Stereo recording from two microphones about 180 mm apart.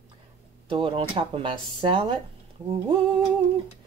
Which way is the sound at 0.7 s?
30° right (ahead or behind).